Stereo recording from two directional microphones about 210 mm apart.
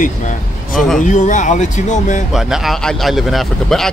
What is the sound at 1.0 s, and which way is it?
Speech, 35° left (ahead or behind).